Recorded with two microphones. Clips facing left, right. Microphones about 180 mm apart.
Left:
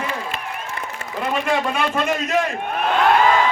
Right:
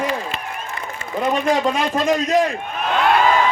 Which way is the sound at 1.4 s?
40° right (ahead or behind).